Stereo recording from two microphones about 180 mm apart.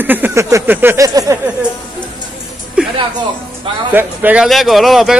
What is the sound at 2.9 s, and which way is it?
Speech, 25° right (ahead or behind).